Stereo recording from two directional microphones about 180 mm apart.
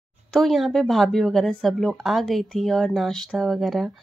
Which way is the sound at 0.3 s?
Centre (ahead or behind).